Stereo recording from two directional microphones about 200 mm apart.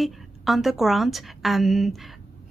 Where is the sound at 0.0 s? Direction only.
Centre (ahead or behind).